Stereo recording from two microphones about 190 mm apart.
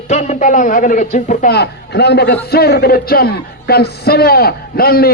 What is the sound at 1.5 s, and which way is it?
A man's voice, 60° left (ahead or behind).